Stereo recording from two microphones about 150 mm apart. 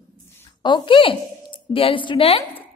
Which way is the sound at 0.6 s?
30° left (ahead or behind).